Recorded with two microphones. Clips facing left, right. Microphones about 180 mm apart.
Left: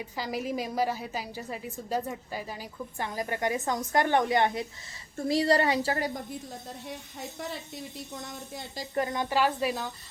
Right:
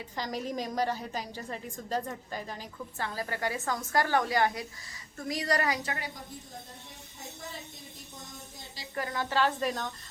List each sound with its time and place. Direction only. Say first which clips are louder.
0.0 s a woman's voice: left 2 dB; 10° left (ahead or behind); by 6.1 s 35° left (ahead or behind)
6.8 s a woman's voice: left 8 dB; 75° left (ahead or behind)
9.0 s a woman's voice: left 3 dB; 20° left (ahead or behind)